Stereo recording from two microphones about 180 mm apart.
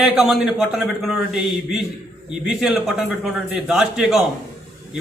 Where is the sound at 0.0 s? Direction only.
5° right (ahead or behind).